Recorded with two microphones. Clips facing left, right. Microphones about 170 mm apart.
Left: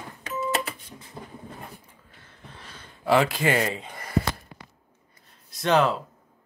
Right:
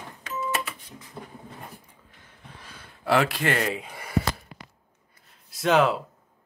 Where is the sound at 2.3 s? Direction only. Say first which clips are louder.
Left 1 dB; 10° right (ahead or behind).